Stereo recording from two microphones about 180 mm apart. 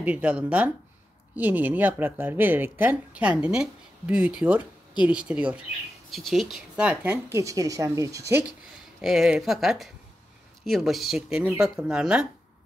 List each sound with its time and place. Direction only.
0.0 s speech: 5° right (ahead or behind)